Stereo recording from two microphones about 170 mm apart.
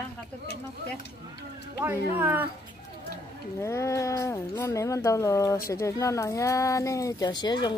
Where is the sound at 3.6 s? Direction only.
15° left (ahead or behind).